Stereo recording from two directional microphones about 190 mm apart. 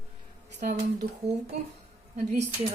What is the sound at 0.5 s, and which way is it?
Speech, 45° right (ahead or behind).